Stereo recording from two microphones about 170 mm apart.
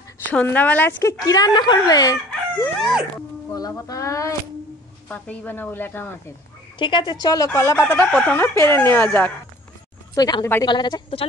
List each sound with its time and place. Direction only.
0.3 s speech: 10° left (ahead or behind)
1.2 s speech: 20° left (ahead or behind)
2.7 s dog: centre (ahead or behind)
3.5 s speech: 20° left (ahead or behind)
5.0 s speech: 10° left (ahead or behind)
6.8 s speech: 30° left (ahead or behind); by 9.3 s 10° left (ahead or behind)
10.1 s speech: 20° left (ahead or behind)